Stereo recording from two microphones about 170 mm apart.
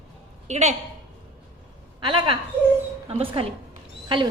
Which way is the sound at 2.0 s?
30° right (ahead or behind).